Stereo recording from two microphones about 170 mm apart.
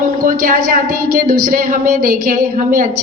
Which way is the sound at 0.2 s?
55° right (ahead or behind).